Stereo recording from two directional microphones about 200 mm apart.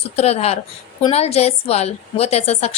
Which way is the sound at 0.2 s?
30° left (ahead or behind).